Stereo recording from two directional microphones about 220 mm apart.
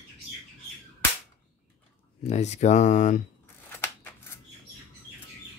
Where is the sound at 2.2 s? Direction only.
30° left (ahead or behind).